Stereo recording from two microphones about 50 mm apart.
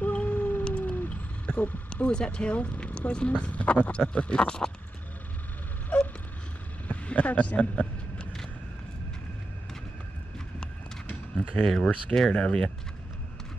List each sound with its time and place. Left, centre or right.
0.0 s howl: left
0.7 s a sound: left
2.0 s speech: centre
6.9 s vehicle: left
11.3 s speech: centre